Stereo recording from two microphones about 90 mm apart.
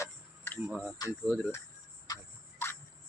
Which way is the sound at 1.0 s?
45° left (ahead or behind).